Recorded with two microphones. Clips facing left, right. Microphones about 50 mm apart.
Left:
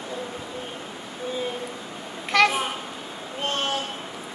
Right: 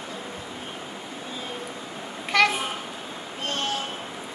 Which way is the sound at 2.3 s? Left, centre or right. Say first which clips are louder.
Left 1 dB; centre.